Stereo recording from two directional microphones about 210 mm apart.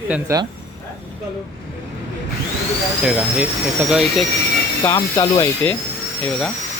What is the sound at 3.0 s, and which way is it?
Speech, 5° right (ahead or behind).